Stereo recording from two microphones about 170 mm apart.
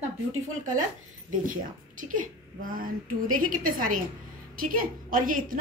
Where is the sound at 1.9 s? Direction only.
50° right (ahead or behind).